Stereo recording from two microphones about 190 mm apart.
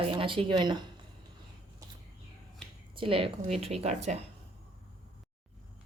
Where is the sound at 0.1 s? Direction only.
25° right (ahead or behind).